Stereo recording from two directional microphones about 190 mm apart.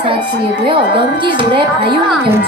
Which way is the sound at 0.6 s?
25° right (ahead or behind).